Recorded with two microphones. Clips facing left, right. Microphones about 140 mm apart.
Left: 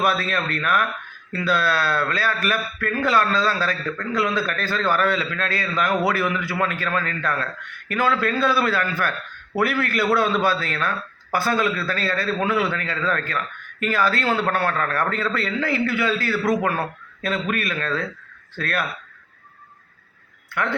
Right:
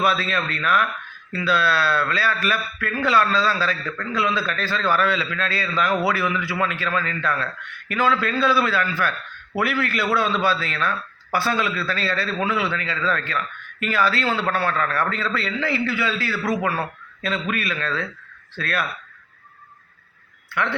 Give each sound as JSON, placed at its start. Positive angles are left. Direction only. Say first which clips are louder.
{"t": 0.0, "sound": "a man's voice", "louder": "even", "side_deg": 45}
{"t": 20.5, "sound": "a man's voice", "louder": "even", "side_deg": 45}